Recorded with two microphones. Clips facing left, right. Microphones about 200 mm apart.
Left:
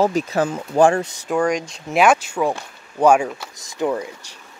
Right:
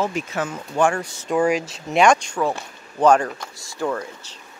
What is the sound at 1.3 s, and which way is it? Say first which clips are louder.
Speech: even; 5° right (ahead or behind).